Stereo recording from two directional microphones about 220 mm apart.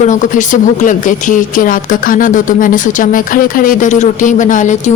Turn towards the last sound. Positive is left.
turn(degrees=35)  # may be behind; listen again after turning